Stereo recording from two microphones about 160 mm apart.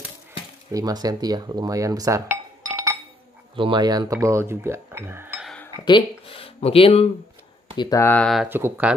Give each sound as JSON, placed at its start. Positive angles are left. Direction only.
{"t": 0.7, "sound": "speech", "side_deg": -20}
{"t": 3.5, "sound": "speech", "side_deg": -30}
{"t": 5.4, "sound": "a sound", "side_deg": 5}
{"t": 5.9, "sound": "speech", "side_deg": 30}
{"t": 8.0, "sound": "speech", "side_deg": 10}
{"t": 8.5, "sound": "speech", "side_deg": -15}